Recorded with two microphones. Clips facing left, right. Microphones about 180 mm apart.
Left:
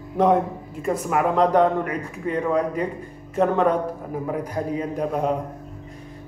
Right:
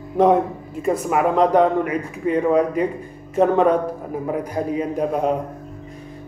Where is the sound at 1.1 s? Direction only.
15° right (ahead or behind).